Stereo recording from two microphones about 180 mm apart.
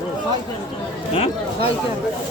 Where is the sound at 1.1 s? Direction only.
40° left (ahead or behind).